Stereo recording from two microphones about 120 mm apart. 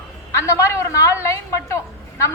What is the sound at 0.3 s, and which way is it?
A woman's voice, 25° left (ahead or behind).